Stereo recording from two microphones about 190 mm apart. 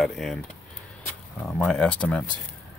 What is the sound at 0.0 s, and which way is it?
Speech, centre (ahead or behind).